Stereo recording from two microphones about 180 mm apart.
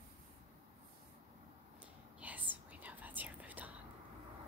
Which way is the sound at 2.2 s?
10° right (ahead or behind).